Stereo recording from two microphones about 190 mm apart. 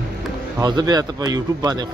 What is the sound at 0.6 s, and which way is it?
A man's voice, 20° right (ahead or behind).